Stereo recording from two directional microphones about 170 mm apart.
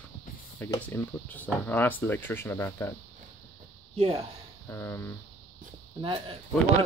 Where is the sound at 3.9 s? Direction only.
35° right (ahead or behind).